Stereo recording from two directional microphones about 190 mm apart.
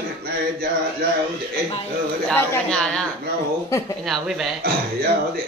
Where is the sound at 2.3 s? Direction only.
5° left (ahead or behind).